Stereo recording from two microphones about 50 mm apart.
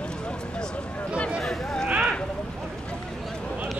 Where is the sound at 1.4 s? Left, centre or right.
Centre.